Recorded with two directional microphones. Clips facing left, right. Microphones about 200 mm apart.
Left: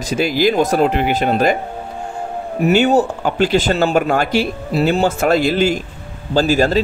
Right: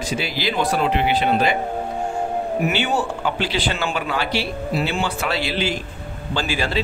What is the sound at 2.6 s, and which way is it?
A man's voice, 40° left (ahead or behind).